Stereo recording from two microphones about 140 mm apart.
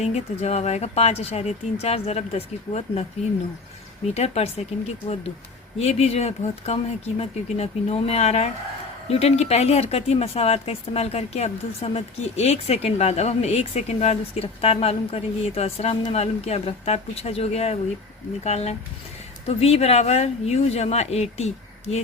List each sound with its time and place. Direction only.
0.0 s speech: 50° left (ahead or behind)
4.1 s speech: 50° left (ahead or behind)